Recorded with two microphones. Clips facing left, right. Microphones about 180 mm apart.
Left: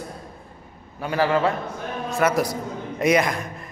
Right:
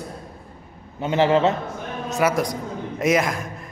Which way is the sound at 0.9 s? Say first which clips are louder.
Right 3 dB; 25° right (ahead or behind).